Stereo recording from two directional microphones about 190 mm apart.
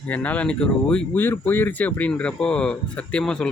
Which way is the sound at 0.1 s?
10° left (ahead or behind).